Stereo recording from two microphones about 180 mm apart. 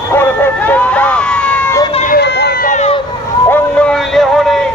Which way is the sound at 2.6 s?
40° left (ahead or behind).